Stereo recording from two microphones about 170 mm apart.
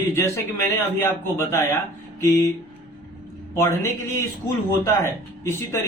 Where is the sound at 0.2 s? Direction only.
15° left (ahead or behind).